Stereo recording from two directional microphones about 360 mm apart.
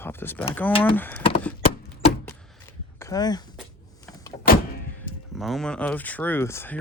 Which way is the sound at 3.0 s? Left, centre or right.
Centre.